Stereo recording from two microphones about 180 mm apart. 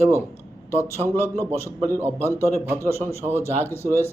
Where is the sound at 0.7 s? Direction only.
15° left (ahead or behind).